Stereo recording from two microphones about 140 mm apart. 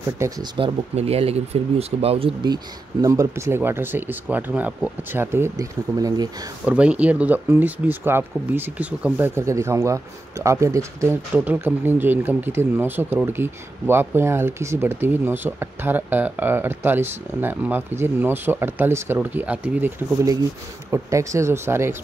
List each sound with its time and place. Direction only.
0.6 s speech: 40° right (ahead or behind)
2.4 s speech: 25° right (ahead or behind)
6.6 s speech: 10° right (ahead or behind)